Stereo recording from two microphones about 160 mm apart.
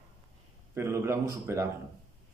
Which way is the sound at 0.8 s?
15° right (ahead or behind).